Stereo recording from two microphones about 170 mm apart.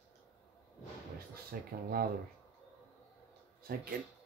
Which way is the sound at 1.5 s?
60° right (ahead or behind).